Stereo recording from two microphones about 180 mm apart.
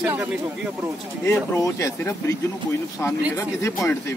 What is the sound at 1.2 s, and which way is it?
Speech, 15° left (ahead or behind).